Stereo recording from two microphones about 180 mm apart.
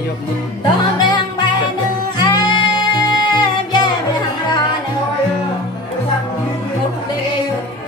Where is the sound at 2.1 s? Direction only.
25° left (ahead or behind).